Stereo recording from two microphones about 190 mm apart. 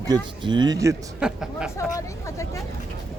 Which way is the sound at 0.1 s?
25° right (ahead or behind).